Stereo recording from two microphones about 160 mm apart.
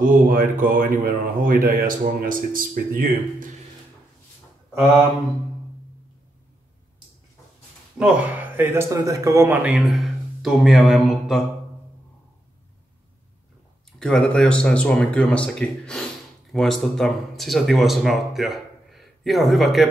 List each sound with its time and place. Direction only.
0.0 s speech: 60° right (ahead or behind)
8.0 s speech: 10° right (ahead or behind)
13.9 s speech: 5° left (ahead or behind)